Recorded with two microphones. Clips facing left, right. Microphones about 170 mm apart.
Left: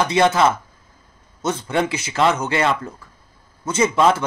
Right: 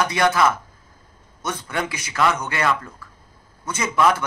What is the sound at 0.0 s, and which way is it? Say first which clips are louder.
A man's voice: left 3 dB; 25° left (ahead or behind).